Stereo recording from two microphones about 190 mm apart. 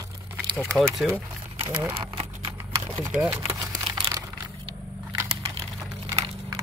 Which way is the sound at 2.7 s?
20° right (ahead or behind).